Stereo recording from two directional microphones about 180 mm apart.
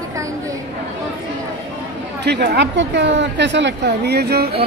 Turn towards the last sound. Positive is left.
turn(degrees=-60)  # may be behind; listen again after turning